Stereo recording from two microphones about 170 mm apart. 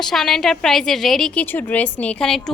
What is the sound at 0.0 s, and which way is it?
A woman's voice, centre (ahead or behind).